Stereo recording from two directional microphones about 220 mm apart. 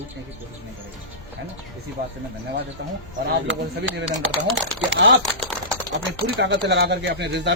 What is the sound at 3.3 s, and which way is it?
Speech, 60° right (ahead or behind).